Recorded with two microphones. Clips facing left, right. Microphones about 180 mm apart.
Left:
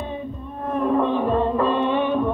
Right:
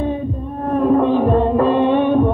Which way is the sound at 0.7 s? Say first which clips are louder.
Right 6 dB; 45° right (ahead or behind).